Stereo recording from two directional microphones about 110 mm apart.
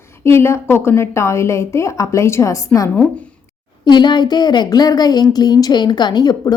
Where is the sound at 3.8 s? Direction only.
45° left (ahead or behind).